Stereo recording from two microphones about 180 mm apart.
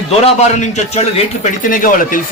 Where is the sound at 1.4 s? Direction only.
50° left (ahead or behind).